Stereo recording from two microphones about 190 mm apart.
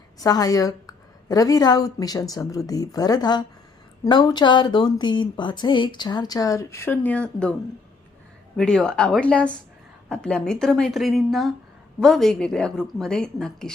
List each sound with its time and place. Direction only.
0.2 s a woman's voice: 20° left (ahead or behind)
8.5 s a woman's voice: 5° left (ahead or behind)